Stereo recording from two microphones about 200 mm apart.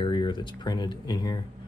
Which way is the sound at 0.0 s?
25° left (ahead or behind).